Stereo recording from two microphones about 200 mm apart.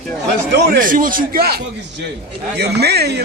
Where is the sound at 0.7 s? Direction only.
45° right (ahead or behind).